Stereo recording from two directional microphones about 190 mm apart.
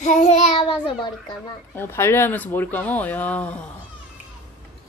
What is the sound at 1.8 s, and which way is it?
Speech, 15° left (ahead or behind).